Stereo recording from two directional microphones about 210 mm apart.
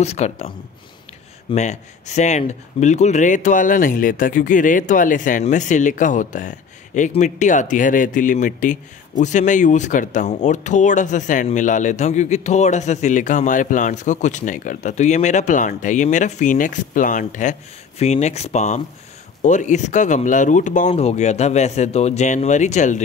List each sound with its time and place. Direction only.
0.0 s speech: 30° left (ahead or behind)
1.5 s speech: 35° left (ahead or behind)